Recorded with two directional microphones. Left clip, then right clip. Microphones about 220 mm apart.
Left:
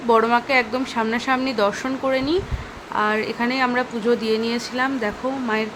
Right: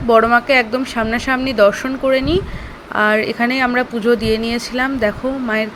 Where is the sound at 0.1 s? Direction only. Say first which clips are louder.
Right 5 dB; 10° right (ahead or behind).